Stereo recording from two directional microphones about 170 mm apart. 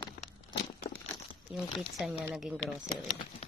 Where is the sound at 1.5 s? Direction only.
Centre (ahead or behind).